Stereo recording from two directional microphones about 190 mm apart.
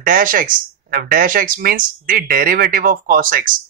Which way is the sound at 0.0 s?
45° right (ahead or behind).